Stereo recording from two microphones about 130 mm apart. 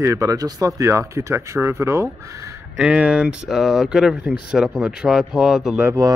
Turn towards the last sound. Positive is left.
turn(degrees=-20)  # may be behind; listen again after turning